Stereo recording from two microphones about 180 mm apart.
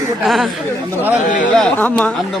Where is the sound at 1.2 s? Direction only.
45° left (ahead or behind).